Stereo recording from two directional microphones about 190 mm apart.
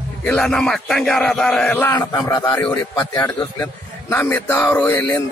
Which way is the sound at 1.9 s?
15° left (ahead or behind).